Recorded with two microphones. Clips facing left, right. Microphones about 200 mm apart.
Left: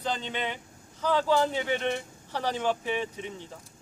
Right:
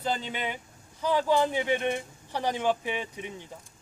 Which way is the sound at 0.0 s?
5° right (ahead or behind).